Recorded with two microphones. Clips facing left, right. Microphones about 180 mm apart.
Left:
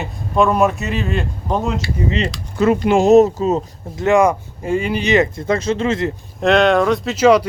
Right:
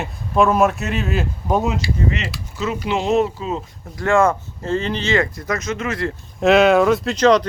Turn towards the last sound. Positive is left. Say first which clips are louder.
# left 2 dB
turn(degrees=10)  # may be behind; listen again after turning